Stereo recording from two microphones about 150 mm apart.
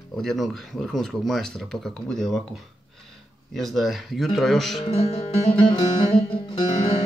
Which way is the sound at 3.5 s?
Centre (ahead or behind).